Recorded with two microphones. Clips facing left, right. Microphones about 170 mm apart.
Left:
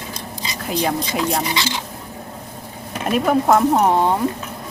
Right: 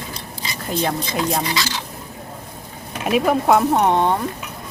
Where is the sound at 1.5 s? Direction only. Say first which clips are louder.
Left 1 dB; 20° left (ahead or behind).